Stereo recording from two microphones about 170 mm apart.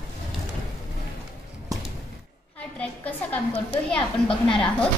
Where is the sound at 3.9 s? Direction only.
30° left (ahead or behind).